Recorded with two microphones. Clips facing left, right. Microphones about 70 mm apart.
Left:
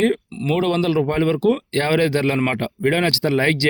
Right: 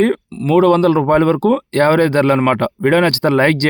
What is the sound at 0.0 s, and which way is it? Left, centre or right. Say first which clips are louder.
Speech: right 4 dB; right.